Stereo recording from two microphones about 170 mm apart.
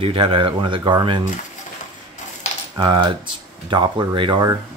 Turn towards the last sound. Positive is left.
turn(degrees=-25)  # may be behind; listen again after turning